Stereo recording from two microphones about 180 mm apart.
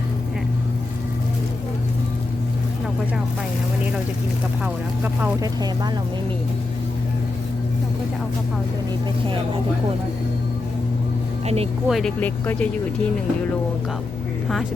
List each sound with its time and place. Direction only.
5.2 s speech: 20° right (ahead or behind)
11.4 s speech: 35° right (ahead or behind)
11.9 s speech: centre (ahead or behind)